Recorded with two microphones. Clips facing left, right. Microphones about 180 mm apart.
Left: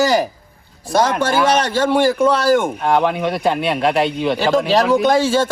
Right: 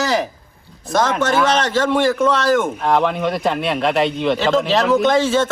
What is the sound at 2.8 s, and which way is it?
A man's voice, centre (ahead or behind).